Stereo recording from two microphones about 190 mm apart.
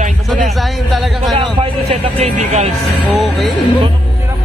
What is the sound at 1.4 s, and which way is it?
Speech, 35° right (ahead or behind).